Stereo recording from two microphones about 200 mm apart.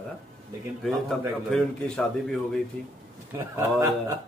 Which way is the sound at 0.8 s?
5° left (ahead or behind).